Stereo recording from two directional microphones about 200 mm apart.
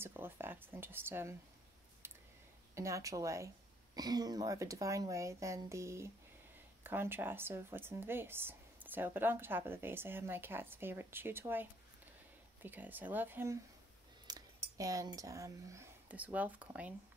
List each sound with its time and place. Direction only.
0.0 s speech: 10° right (ahead or behind)
2.7 s speech: 15° right (ahead or behind)
12.6 s speech: 10° right (ahead or behind)
14.3 s cutlery: 20° right (ahead or behind)
14.8 s speech: 15° right (ahead or behind)